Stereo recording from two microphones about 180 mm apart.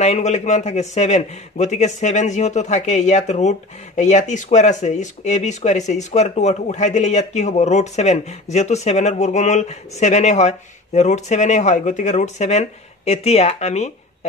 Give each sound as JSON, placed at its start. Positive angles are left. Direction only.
{"t": 0.0, "sound": "a man's voice", "side_deg": 40}